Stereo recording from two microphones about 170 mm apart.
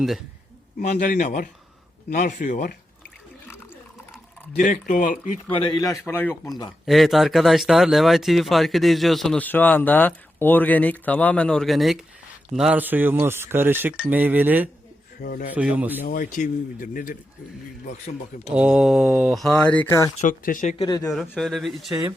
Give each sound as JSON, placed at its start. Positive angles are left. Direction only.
{"t": 0.8, "sound": "speech", "side_deg": 50}
{"t": 4.5, "sound": "speech", "side_deg": 50}
{"t": 5.5, "sound": "speech", "side_deg": 30}
{"t": 5.9, "sound": "speech", "side_deg": 15}
{"t": 6.8, "sound": "speech", "side_deg": 0}
{"t": 15.2, "sound": "speech", "side_deg": 60}
{"t": 15.5, "sound": "speech", "side_deg": -10}
{"t": 16.0, "sound": "speech", "side_deg": 55}
{"t": 18.4, "sound": "speech", "side_deg": -5}
{"t": 20.2, "sound": "speech", "side_deg": 50}
{"t": 20.8, "sound": "speech", "side_deg": 20}
{"t": 21.2, "sound": "speech", "side_deg": 0}